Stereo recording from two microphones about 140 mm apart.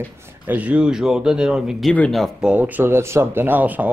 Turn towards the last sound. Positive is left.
turn(degrees=-10)  # may be behind; listen again after turning